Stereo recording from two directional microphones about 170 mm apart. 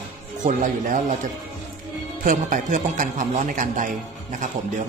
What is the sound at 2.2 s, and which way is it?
A man's voice, 50° right (ahead or behind).